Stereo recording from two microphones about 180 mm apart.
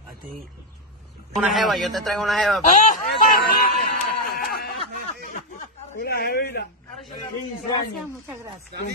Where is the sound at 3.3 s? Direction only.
55° left (ahead or behind).